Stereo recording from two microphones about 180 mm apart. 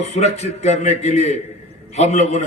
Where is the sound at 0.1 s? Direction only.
35° left (ahead or behind).